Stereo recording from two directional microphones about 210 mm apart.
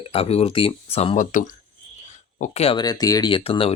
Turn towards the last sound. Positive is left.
turn(degrees=25)  # may be behind; listen again after turning